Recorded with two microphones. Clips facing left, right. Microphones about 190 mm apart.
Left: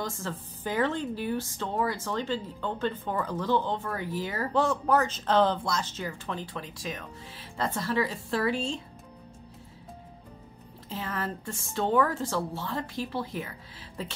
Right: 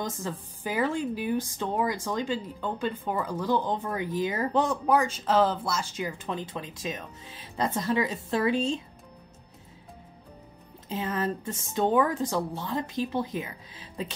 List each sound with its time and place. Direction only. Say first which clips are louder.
0.0 s a woman's voice: right 1 dB; 15° right (ahead or behind)
10.9 s a woman's voice: right 4 dB; 20° right (ahead or behind)